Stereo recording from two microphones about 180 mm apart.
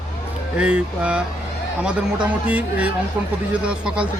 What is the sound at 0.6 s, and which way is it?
Speech, 5° right (ahead or behind).